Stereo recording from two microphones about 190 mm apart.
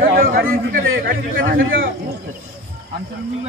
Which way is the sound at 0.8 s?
80° right.